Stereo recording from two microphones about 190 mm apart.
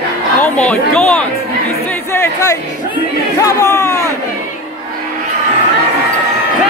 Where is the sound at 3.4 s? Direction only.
15° left (ahead or behind).